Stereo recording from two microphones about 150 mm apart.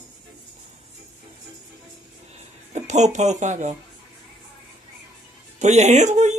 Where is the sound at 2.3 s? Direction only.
50° right (ahead or behind).